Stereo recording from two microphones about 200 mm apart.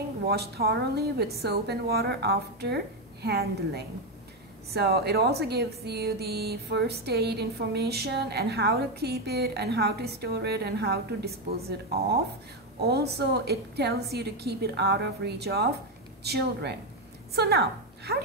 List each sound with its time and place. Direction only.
0.3 s speech: 50° right (ahead or behind)
12.8 s a woman's voice: 55° right (ahead or behind)